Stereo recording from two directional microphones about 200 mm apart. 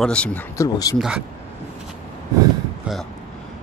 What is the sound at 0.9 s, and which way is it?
Speech, 5° right (ahead or behind).